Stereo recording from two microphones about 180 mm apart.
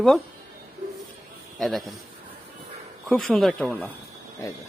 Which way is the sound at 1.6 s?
Centre (ahead or behind).